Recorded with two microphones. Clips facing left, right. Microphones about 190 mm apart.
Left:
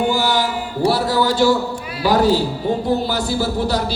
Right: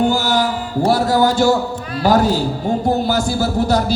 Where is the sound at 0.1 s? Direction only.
45° right (ahead or behind).